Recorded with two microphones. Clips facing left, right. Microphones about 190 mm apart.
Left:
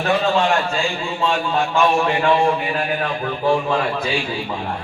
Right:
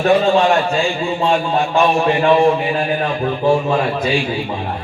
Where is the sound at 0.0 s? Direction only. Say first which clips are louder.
Right 5 dB; 20° right (ahead or behind).